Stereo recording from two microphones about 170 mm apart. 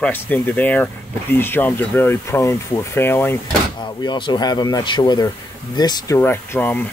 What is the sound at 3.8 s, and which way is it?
Speech, 25° left (ahead or behind).